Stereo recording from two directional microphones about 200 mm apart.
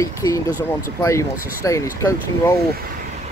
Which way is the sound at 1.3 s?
45° left (ahead or behind).